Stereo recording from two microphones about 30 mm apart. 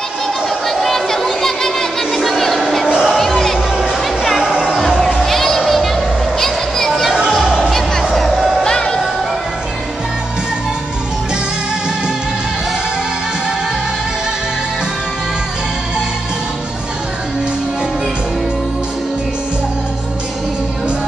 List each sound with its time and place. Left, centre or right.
0.7 s a sound: centre
3.2 s music: centre
3.5 s a sound: centre
4.0 s music: centre
4.5 s music: centre
4.7 s music: centre
5.2 s a sound: centre
7.4 s music: centre
8.1 s music: centre
8.6 s music: left